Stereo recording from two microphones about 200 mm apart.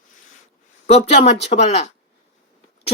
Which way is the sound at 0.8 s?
30° left (ahead or behind).